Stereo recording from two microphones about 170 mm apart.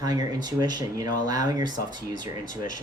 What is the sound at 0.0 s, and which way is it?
Speech, 20° right (ahead or behind).